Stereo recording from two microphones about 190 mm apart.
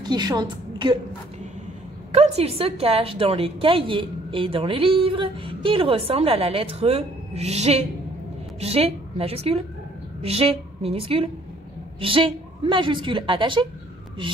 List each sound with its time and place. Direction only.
0.0 s a woman's voice: 20° right (ahead or behind)
2.1 s a woman's voice: 35° right (ahead or behind)